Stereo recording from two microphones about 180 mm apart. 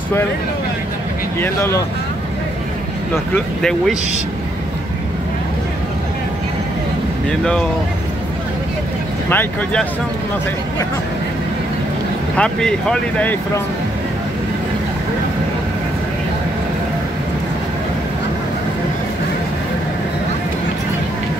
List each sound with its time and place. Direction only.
1.4 s speech: 15° left (ahead or behind)
7.2 s speech: 5° left (ahead or behind)
9.3 s speech: 10° left (ahead or behind)
12.4 s speech: 5° left (ahead or behind)